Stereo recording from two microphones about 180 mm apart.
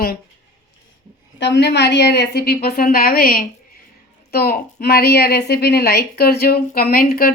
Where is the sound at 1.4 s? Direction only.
70° left (ahead or behind).